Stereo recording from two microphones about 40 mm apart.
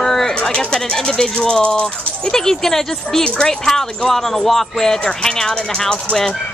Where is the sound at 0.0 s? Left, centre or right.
Centre.